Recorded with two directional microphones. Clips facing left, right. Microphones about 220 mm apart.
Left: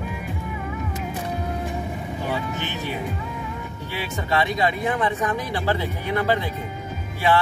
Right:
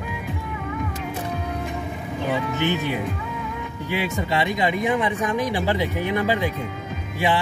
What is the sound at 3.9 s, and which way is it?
Speech, 15° right (ahead or behind).